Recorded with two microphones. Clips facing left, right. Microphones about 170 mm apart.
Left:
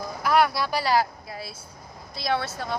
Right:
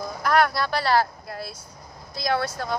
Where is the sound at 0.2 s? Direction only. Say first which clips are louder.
Even; 5° left (ahead or behind).